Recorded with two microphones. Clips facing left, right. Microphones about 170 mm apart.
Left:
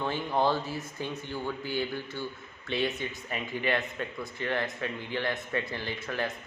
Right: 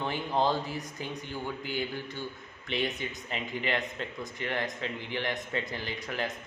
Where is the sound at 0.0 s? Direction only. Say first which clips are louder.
Left 1 dB; 15° right (ahead or behind).